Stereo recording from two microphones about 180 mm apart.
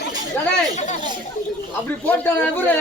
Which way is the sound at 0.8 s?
40° left (ahead or behind).